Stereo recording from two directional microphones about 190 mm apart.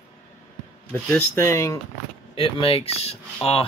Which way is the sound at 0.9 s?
10° left (ahead or behind).